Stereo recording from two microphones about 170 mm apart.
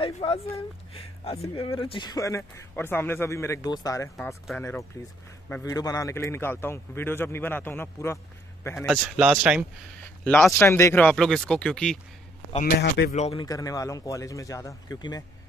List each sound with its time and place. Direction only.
0.0 s a man's voice: 35° left (ahead or behind); by 8.9 s 15° left (ahead or behind)
8.9 s speech: 5° right (ahead or behind)
10.2 s a man's voice: 5° left (ahead or behind)
12.6 s speech: 70° left (ahead or behind)
13.1 s speech: 35° left (ahead or behind)
13.5 s speech: 20° left (ahead or behind)